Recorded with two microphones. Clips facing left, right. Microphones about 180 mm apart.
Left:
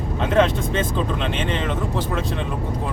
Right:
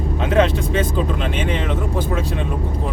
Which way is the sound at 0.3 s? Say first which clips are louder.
Right 1 dB; 10° right (ahead or behind).